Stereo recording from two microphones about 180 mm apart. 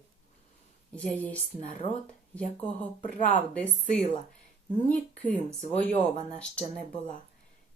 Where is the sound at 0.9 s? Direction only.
10° left (ahead or behind).